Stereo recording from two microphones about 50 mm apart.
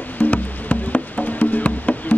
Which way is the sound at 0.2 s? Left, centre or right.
Left.